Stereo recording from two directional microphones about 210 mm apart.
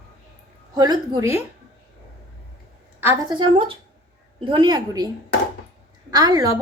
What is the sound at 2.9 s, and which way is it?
Speech, 15° right (ahead or behind).